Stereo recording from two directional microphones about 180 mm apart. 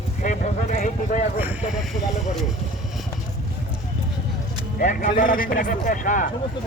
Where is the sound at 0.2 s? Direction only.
45° left (ahead or behind).